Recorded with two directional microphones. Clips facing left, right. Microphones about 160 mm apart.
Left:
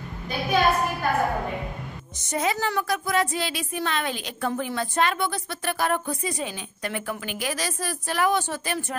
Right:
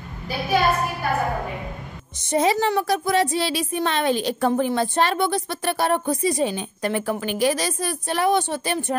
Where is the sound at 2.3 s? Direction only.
30° right (ahead or behind).